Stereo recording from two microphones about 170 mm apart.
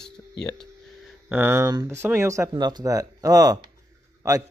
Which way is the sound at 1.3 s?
15° right (ahead or behind).